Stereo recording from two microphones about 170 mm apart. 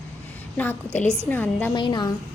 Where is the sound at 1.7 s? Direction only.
25° left (ahead or behind).